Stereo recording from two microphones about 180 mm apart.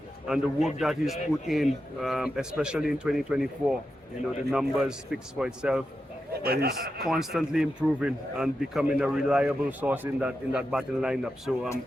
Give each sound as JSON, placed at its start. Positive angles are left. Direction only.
{"t": 0.3, "sound": "a man's voice", "side_deg": 0}
{"t": 6.4, "sound": "a man's voice", "side_deg": -60}
{"t": 7.1, "sound": "a man's voice", "side_deg": 0}